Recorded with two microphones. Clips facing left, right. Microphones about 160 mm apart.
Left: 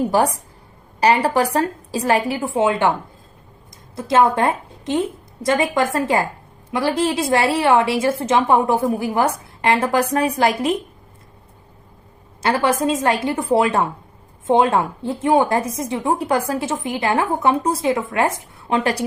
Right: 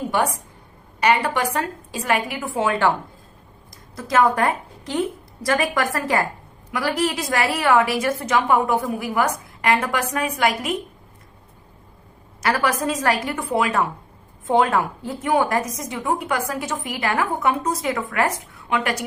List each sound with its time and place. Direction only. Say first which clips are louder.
0.1 s a woman's voice: left 4 dB; 35° left (ahead or behind); by 2.9 s 20° left (ahead or behind)
3.9 s a woman's voice: left 3 dB; 25° left (ahead or behind)
12.4 s a woman's voice: left 3 dB; 25° left (ahead or behind)